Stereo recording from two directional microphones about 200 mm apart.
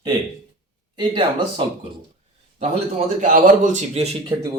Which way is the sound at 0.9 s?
25° right (ahead or behind).